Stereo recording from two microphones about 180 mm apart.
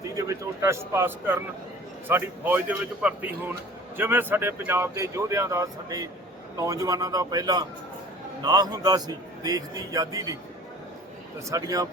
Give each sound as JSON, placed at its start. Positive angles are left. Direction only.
{"t": 0.2, "sound": "a man's voice", "side_deg": -15}
{"t": 11.4, "sound": "a man's voice", "side_deg": -20}